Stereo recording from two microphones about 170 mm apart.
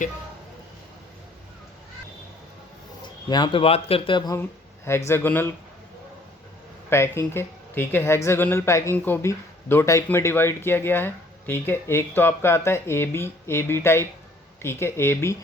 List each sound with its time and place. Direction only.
3.2 s speech: 25° left (ahead or behind)
4.9 s speech: 15° left (ahead or behind)
6.9 s speech: 15° left (ahead or behind)